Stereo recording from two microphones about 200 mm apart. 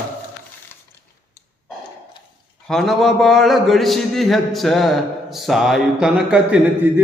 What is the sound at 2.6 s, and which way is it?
A man's voice, centre (ahead or behind).